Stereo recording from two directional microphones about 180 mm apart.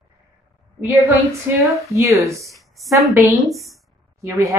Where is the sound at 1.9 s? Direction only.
15° right (ahead or behind).